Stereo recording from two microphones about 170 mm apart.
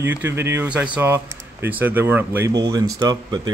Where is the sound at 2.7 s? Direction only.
25° right (ahead or behind).